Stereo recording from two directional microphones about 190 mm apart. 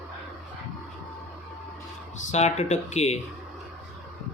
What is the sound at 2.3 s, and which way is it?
Speech, 35° left (ahead or behind).